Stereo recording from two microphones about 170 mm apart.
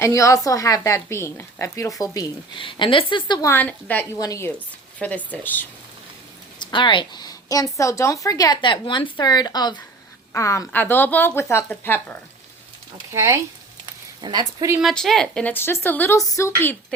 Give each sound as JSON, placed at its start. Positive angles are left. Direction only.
{"t": 0.0, "sound": "a woman's voice", "side_deg": 20}
{"t": 3.5, "sound": "a woman's voice", "side_deg": 10}
{"t": 6.6, "sound": "a woman's voice", "side_deg": 25}
{"t": 13.1, "sound": "speech", "side_deg": -15}
{"t": 14.8, "sound": "a woman's voice", "side_deg": 0}